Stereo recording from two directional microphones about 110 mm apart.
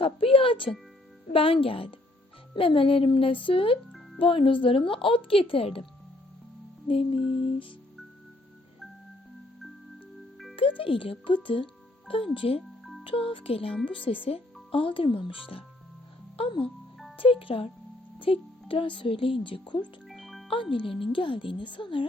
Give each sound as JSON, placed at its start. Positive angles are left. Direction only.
{"t": 0.0, "sound": "speech", "side_deg": 55}
{"t": 6.8, "sound": "speech", "side_deg": 55}
{"t": 10.8, "sound": "speech", "side_deg": 50}
{"t": 12.8, "sound": "music", "side_deg": 0}
{"t": 13.1, "sound": "speech", "side_deg": 55}
{"t": 16.4, "sound": "speech", "side_deg": 55}
{"t": 20.1, "sound": "music", "side_deg": 0}
{"t": 20.5, "sound": "speech", "side_deg": 50}